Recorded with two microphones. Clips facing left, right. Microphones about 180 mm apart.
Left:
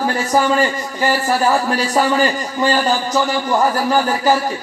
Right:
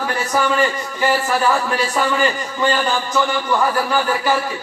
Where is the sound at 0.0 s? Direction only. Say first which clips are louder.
Left 3 dB; 35° left (ahead or behind).